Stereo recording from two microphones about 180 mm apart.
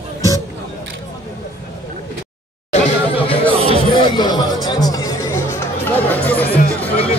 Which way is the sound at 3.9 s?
25° left (ahead or behind).